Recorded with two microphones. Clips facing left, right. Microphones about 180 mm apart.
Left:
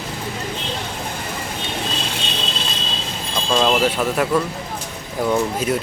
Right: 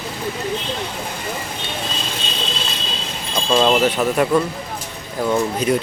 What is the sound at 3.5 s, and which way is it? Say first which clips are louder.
Speech: right 2 dB; 5° right (ahead or behind).